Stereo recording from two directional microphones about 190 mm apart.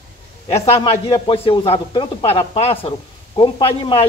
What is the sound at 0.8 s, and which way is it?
A man's voice, 25° left (ahead or behind).